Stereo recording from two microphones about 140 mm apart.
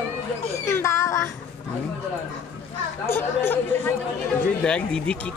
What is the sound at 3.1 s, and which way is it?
Speech, 15° left (ahead or behind).